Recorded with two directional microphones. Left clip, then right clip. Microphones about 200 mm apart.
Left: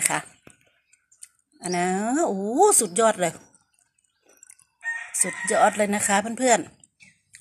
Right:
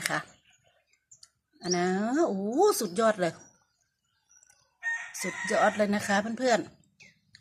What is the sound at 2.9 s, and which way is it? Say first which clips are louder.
Speech: left 5 dB; 10° left (ahead or behind).